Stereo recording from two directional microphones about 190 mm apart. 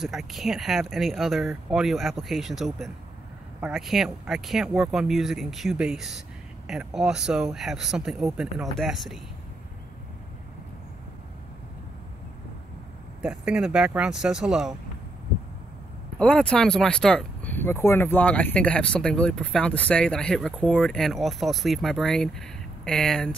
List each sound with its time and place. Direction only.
0.0 s speech: centre (ahead or behind)
13.2 s speech: 5° right (ahead or behind)
16.2 s speech: 5° left (ahead or behind)